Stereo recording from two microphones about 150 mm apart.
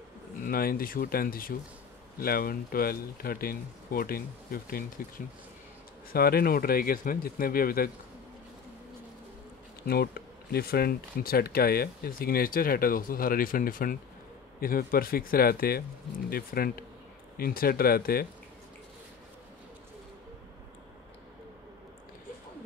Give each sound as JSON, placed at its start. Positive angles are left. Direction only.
{"t": 0.5, "sound": "speech", "side_deg": 80}
{"t": 6.1, "sound": "speech", "side_deg": 90}
{"t": 9.8, "sound": "speech", "side_deg": 90}